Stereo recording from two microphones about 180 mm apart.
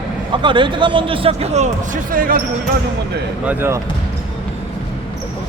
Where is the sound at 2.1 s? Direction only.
50° right (ahead or behind).